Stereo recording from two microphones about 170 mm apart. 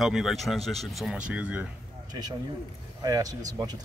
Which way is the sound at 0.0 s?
Centre (ahead or behind).